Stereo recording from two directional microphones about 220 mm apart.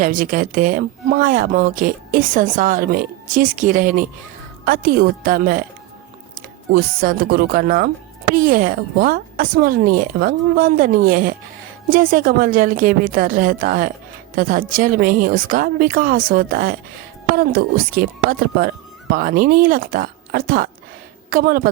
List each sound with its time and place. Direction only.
0.0 s speech: 40° right (ahead or behind)
6.7 s speech: 40° right (ahead or behind)